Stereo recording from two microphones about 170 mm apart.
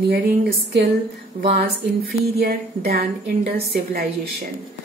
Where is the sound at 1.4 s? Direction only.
70° right (ahead or behind).